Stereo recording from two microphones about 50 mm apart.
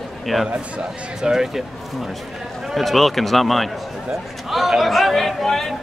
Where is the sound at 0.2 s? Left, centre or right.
Centre.